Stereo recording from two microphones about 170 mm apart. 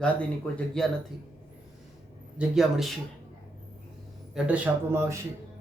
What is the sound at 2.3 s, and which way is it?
Speech, centre (ahead or behind).